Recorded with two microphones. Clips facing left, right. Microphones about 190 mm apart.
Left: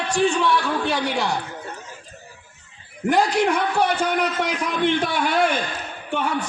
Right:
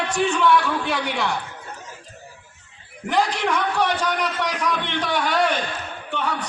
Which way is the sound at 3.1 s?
50° left (ahead or behind).